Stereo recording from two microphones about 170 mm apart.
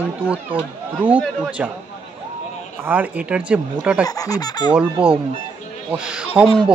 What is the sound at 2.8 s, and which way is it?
Speech, 10° right (ahead or behind).